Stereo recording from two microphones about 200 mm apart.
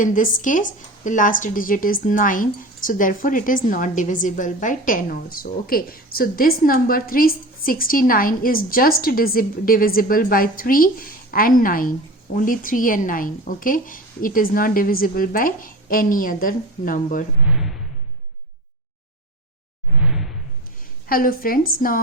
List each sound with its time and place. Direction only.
0.0 s a woman's voice: 40° left (ahead or behind)
17.4 s speech: 5° right (ahead or behind)
20.0 s whoosh: 5° right (ahead or behind)
21.1 s a woman's voice: 45° left (ahead or behind)